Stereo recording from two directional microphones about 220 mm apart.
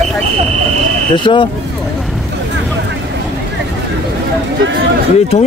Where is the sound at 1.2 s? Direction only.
20° left (ahead or behind).